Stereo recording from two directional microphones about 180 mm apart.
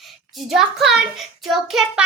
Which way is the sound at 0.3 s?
Centre (ahead or behind).